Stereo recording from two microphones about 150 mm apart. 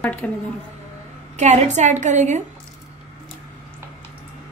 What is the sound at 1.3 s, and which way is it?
A woman's voice, 50° right (ahead or behind).